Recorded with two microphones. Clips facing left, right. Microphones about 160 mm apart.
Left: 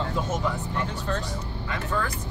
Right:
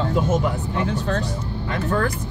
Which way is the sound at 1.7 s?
55° right (ahead or behind).